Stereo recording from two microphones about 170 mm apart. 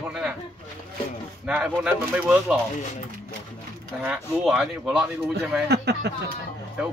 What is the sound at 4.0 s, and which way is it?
Speech, 5° right (ahead or behind).